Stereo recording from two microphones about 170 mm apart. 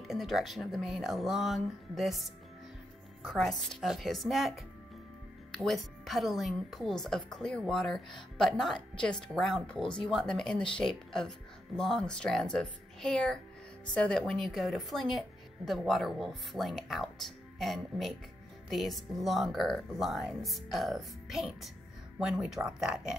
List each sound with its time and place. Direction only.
0.0 s a woman's voice: centre (ahead or behind)
3.3 s a woman's voice: centre (ahead or behind)
10.5 s speech: 30° left (ahead or behind)
10.8 s a woman's voice: 5° left (ahead or behind)